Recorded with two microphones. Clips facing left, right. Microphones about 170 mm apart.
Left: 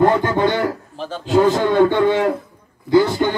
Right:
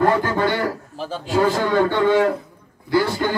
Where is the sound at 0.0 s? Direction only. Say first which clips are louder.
Left 3 dB; 20° left (ahead or behind).